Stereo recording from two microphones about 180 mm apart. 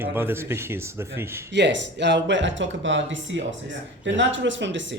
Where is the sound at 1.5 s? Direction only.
80° right.